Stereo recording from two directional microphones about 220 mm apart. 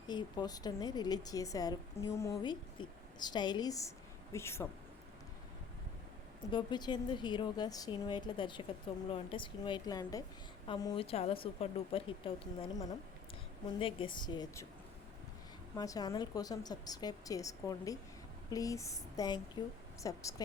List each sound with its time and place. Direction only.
0.1 s a woman's voice: 20° left (ahead or behind)
6.5 s a woman's voice: 20° left (ahead or behind)
13.7 s a woman's voice: 25° left (ahead or behind)
15.7 s a woman's voice: 15° left (ahead or behind)